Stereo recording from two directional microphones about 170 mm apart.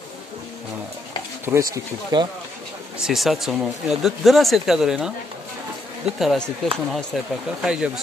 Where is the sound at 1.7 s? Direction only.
25° right (ahead or behind).